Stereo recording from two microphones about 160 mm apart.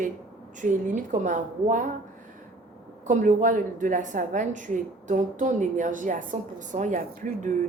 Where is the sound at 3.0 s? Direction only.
50° right (ahead or behind).